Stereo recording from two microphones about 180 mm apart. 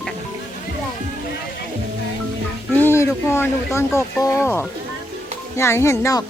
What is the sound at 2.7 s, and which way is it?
Speech, 15° left (ahead or behind).